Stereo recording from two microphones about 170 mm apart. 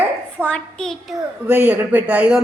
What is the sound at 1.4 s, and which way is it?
Speech, 10° right (ahead or behind).